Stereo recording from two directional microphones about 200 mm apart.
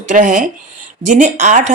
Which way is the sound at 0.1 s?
40° right (ahead or behind).